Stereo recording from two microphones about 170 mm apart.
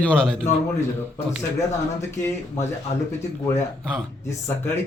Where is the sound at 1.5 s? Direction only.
15° left (ahead or behind).